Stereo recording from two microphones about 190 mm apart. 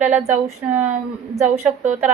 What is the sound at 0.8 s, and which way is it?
A woman's voice, 40° right (ahead or behind).